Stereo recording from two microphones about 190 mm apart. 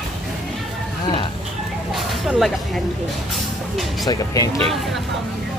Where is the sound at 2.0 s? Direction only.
Centre (ahead or behind).